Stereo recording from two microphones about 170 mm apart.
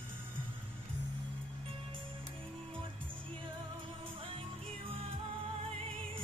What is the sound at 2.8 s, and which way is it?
Music, 30° right (ahead or behind).